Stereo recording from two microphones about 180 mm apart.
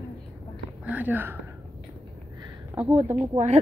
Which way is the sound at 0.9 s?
10° right (ahead or behind).